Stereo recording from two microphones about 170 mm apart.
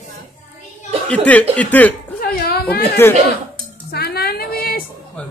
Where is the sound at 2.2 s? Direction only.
65° left (ahead or behind).